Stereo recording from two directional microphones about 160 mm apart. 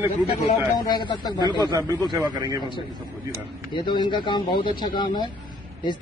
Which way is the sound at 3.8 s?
30° left (ahead or behind).